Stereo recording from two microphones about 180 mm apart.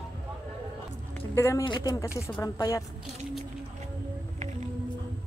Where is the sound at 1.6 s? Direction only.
25° left (ahead or behind).